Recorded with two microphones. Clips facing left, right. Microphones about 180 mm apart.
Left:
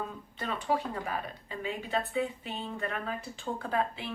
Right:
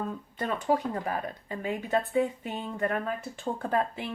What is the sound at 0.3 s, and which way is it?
Speech, 45° right (ahead or behind).